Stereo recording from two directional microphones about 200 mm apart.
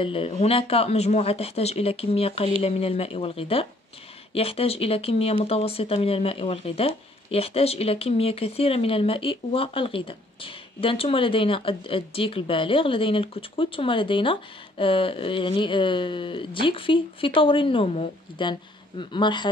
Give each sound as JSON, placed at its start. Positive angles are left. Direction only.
{"t": 0.0, "sound": "speech", "side_deg": 25}